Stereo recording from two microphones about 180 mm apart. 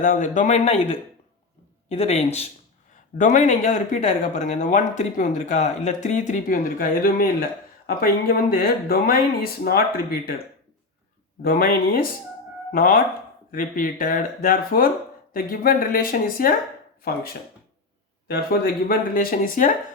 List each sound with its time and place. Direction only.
0.0 s speech: 45° left (ahead or behind)
11.4 s speech: 55° left (ahead or behind)
18.3 s speech: 55° left (ahead or behind)